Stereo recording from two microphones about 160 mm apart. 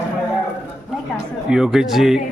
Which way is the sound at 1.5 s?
5° right (ahead or behind).